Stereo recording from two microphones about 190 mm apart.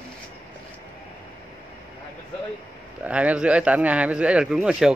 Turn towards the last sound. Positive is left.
turn(degrees=-5)  # may be behind; listen again after turning